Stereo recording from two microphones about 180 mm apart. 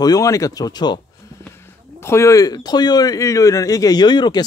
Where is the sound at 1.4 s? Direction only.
15° left (ahead or behind).